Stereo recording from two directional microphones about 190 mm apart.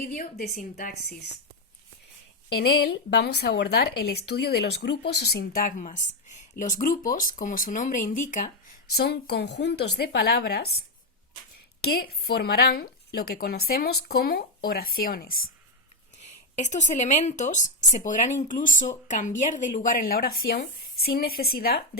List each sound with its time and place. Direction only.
0.1 s speech: 50° left (ahead or behind)
2.6 s speech: 55° left (ahead or behind)
9.0 s speech: 60° left (ahead or behind)
16.2 s speech: 40° left (ahead or behind); by 21.8 s 55° left (ahead or behind)